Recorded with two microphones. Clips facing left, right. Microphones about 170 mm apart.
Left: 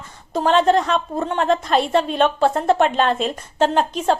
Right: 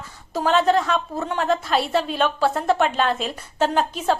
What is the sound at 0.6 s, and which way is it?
Speech, 40° left (ahead or behind).